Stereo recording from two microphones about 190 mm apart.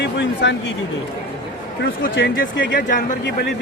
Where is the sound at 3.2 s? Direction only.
65° left (ahead or behind).